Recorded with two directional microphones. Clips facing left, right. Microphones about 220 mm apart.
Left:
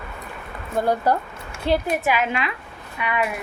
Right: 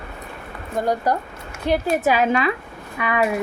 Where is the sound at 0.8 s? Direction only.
15° right (ahead or behind).